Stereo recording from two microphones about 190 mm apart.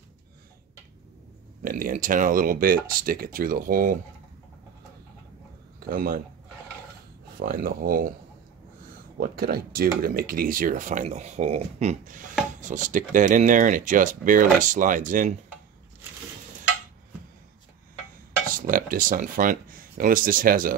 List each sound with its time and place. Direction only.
1.6 s speech: 45° right (ahead or behind)
5.9 s speech: 50° right (ahead or behind)
7.3 s speech: 50° right (ahead or behind)
9.2 s speech: 50° right (ahead or behind)
18.5 s speech: 45° right (ahead or behind)